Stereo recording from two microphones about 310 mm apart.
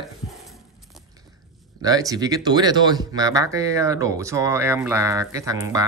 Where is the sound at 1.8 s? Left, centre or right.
Centre.